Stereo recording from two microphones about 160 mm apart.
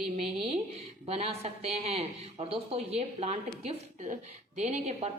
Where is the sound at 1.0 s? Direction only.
40° right (ahead or behind).